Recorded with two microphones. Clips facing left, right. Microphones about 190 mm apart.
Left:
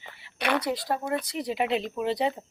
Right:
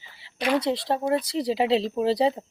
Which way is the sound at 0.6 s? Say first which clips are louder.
Right 4 dB; 25° right (ahead or behind).